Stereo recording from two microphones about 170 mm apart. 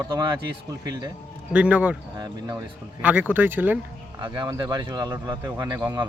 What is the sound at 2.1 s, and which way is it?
Speech, 20° right (ahead or behind).